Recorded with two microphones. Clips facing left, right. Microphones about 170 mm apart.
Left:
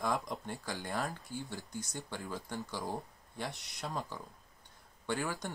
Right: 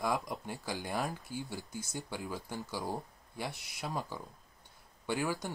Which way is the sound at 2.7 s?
10° right (ahead or behind).